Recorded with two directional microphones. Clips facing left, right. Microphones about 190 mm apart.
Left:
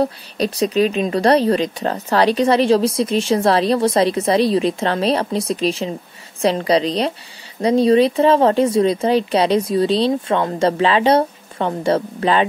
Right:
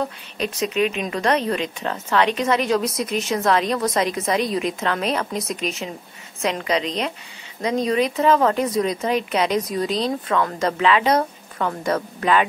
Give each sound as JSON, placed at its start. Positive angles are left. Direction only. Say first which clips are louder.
{"t": 0.0, "sound": "a woman's voice", "louder": "left 6 dB", "side_deg": 35}